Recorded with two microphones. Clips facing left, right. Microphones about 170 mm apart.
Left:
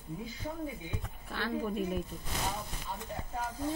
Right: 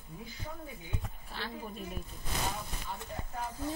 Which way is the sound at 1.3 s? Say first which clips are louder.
Left 8 dB; 55° left (ahead or behind).